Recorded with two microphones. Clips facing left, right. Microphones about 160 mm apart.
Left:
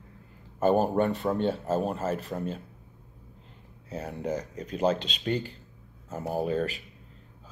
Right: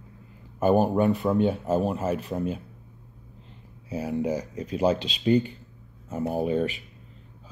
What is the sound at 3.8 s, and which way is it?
Speech, 10° right (ahead or behind).